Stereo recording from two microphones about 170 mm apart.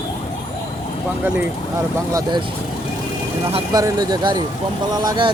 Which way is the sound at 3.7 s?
25° right (ahead or behind).